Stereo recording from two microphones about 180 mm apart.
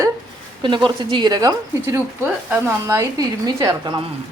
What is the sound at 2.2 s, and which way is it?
A woman's voice, 10° right (ahead or behind).